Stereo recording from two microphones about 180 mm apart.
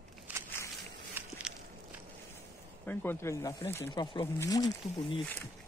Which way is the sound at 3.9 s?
25° left (ahead or behind).